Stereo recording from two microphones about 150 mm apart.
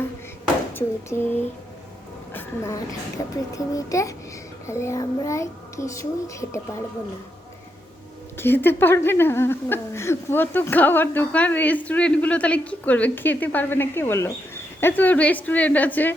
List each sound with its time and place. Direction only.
0.7 s speech: 15° left (ahead or behind)
2.3 s a woman's voice: 20° left (ahead or behind)
8.4 s speech: 15° left (ahead or behind)